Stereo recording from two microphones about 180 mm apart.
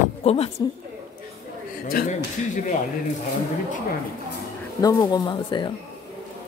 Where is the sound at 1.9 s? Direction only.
50° left (ahead or behind).